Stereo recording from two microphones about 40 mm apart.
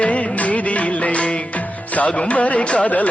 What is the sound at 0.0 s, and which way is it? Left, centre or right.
Music, left.